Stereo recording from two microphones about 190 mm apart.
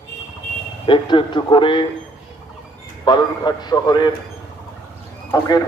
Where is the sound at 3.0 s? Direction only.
20° left (ahead or behind).